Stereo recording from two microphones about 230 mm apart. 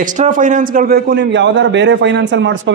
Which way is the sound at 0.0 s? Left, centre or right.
Right.